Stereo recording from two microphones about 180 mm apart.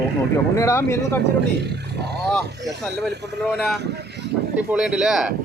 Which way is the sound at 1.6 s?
65° right (ahead or behind).